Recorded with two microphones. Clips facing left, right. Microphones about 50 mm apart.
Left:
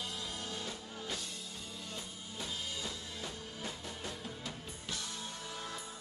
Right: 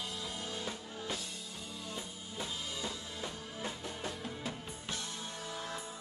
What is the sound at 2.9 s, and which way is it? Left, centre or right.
Music, centre.